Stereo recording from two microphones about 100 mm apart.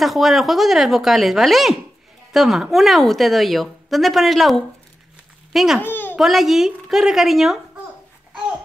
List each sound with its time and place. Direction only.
0.0 s a woman's voice: centre (ahead or behind)
5.8 s a child's voice: 20° left (ahead or behind)
6.1 s a woman's voice: 5° right (ahead or behind)